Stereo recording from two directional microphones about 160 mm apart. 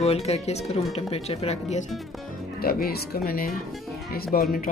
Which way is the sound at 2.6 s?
70° left (ahead or behind).